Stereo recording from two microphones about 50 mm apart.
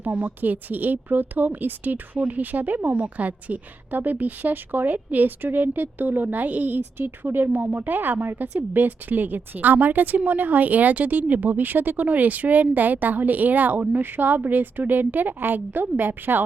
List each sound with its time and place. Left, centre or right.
0.0 s a woman's voice: right
7.0 s a woman's voice: right